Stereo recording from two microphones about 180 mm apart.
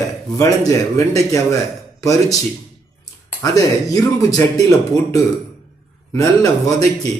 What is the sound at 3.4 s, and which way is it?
A man's voice, 20° left (ahead or behind).